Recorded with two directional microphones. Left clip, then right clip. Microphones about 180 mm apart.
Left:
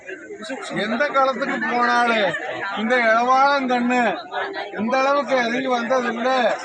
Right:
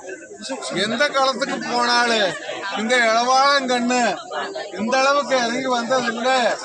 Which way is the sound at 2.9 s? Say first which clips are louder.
Even; 15° left (ahead or behind).